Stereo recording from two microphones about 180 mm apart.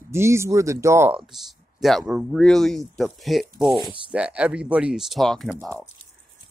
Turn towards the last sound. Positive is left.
turn(degrees=0)  # may be behind; listen again after turning